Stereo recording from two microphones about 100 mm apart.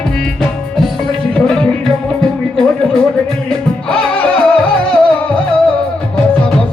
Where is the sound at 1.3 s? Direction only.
10° left (ahead or behind).